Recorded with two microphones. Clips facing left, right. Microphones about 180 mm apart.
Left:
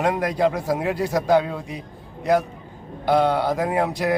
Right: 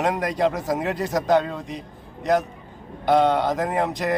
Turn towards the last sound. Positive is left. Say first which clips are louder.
# left 2 dB
turn(degrees=0)  # may be behind; listen again after turning